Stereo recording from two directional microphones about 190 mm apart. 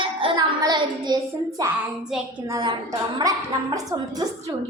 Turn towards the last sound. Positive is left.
turn(degrees=-20)  # may be behind; listen again after turning